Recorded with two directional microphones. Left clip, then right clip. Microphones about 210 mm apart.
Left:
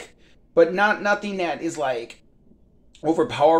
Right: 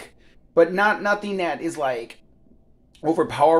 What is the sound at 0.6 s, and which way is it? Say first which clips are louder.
Speech: even; centre (ahead or behind).